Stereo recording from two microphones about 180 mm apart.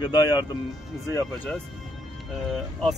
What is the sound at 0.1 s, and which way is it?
Speech, 20° left (ahead or behind).